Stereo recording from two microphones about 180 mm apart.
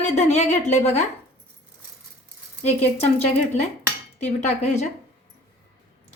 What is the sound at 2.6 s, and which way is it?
A woman's voice, 40° left (ahead or behind).